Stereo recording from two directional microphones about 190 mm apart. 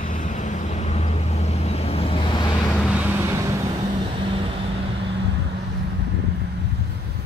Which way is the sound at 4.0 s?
25° right (ahead or behind).